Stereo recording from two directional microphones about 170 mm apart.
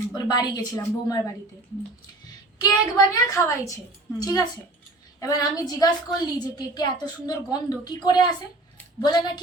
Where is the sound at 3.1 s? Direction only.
20° left (ahead or behind).